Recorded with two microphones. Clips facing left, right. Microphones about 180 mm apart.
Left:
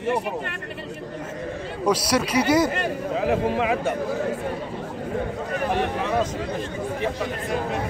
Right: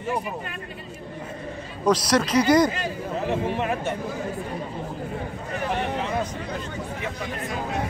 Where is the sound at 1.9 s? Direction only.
10° left (ahead or behind).